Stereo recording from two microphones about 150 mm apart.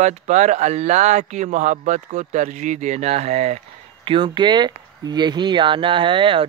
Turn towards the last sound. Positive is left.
turn(degrees=-35)  # may be behind; listen again after turning